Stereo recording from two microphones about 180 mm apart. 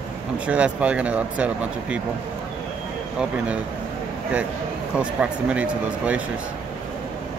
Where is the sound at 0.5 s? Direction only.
5° right (ahead or behind).